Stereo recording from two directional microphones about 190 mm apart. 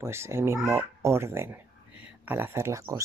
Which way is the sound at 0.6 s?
10° right (ahead or behind).